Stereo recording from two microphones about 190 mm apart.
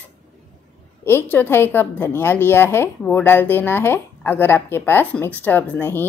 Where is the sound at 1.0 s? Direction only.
10° left (ahead or behind).